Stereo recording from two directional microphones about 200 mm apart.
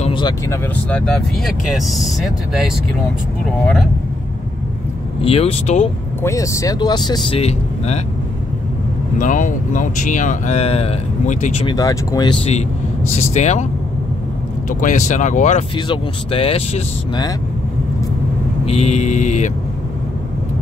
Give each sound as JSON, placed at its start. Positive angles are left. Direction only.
{"t": 0.0, "sound": "vehicle", "side_deg": 25}
{"t": 0.5, "sound": "speech", "side_deg": 5}
{"t": 5.2, "sound": "speech", "side_deg": 30}
{"t": 6.2, "sound": "speech", "side_deg": 15}
{"t": 9.2, "sound": "speech", "side_deg": 40}
{"t": 11.6, "sound": "speech", "side_deg": 20}
{"t": 14.7, "sound": "speech", "side_deg": 40}
{"t": 15.7, "sound": "speech", "side_deg": 25}
{"t": 18.7, "sound": "speech", "side_deg": 30}